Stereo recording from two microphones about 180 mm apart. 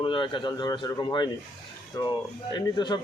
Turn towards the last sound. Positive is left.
turn(degrees=25)  # may be behind; listen again after turning